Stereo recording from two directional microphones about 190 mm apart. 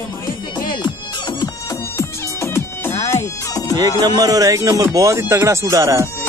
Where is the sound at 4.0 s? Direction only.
20° right (ahead or behind).